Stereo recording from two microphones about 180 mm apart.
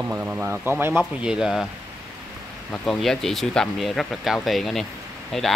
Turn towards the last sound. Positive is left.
turn(degrees=0)  # may be behind; listen again after turning